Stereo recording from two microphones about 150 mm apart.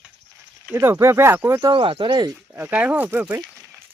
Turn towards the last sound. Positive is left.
turn(degrees=-10)  # may be behind; listen again after turning